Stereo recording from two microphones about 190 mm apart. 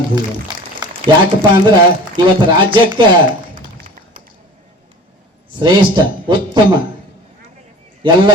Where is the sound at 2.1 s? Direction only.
25° right (ahead or behind).